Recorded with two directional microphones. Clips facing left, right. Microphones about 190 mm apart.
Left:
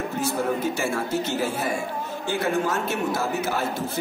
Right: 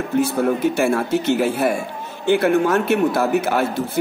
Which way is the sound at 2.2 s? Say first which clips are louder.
Right 9 dB; 65° right (ahead or behind).